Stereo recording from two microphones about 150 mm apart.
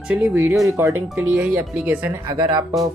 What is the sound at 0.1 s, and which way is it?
Speech, 10° right (ahead or behind).